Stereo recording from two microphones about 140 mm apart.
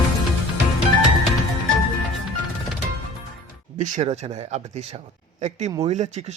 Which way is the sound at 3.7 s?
60° right (ahead or behind).